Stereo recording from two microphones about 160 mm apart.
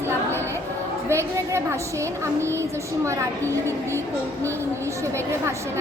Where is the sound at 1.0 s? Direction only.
15° right (ahead or behind).